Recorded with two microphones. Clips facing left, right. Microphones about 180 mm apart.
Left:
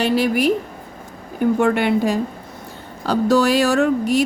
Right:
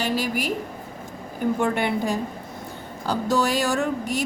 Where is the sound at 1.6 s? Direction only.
70° left (ahead or behind).